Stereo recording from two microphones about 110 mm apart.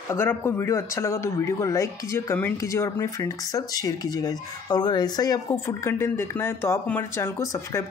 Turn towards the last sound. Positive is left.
turn(degrees=30)  # may be behind; listen again after turning